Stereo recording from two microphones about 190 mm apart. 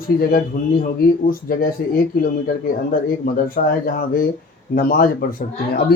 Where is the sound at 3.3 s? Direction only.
50° left (ahead or behind).